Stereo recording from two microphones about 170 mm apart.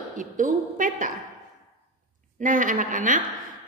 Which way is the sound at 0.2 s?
50° right (ahead or behind).